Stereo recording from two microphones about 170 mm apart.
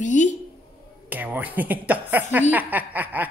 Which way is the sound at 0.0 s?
45° left (ahead or behind).